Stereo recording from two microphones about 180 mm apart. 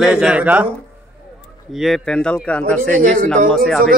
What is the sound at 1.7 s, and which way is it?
Speech, centre (ahead or behind).